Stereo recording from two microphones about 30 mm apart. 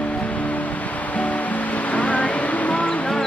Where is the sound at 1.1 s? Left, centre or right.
Left.